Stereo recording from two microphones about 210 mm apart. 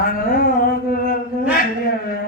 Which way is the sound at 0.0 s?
45° left (ahead or behind).